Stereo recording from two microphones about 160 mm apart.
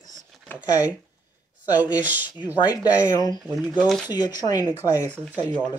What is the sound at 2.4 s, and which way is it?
Speech, 25° left (ahead or behind).